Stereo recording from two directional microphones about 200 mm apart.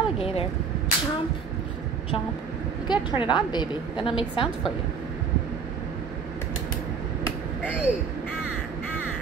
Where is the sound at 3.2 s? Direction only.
20° left (ahead or behind).